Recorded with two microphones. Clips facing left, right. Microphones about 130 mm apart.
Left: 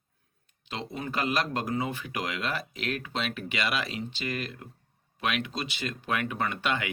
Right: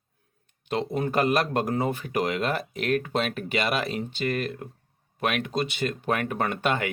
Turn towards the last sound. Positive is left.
turn(degrees=-45)  # may be behind; listen again after turning